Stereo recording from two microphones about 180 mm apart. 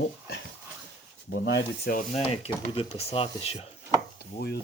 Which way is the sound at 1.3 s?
75° left (ahead or behind).